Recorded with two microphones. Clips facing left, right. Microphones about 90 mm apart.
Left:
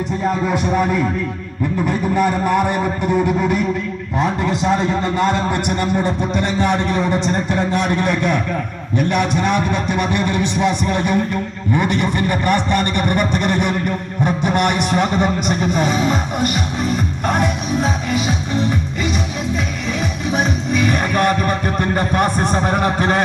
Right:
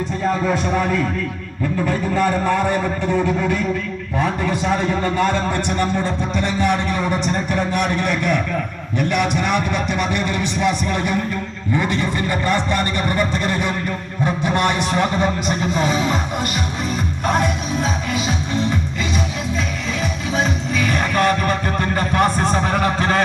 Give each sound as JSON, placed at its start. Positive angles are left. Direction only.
{"t": 0.5, "sound": "a man's voice", "side_deg": 20}
{"t": 17.2, "sound": "a man's voice", "side_deg": 20}
{"t": 20.3, "sound": "music", "side_deg": 20}